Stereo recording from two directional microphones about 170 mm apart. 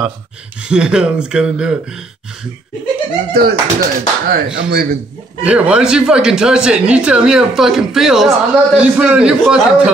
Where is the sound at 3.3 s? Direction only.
65° right (ahead or behind).